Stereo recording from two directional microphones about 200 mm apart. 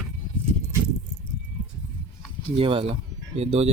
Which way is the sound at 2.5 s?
25° right (ahead or behind).